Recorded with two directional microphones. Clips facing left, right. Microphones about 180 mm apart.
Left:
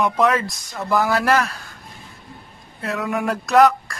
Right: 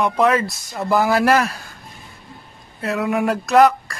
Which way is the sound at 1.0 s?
10° right (ahead or behind).